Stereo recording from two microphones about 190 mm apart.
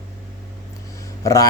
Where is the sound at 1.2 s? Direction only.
15° left (ahead or behind).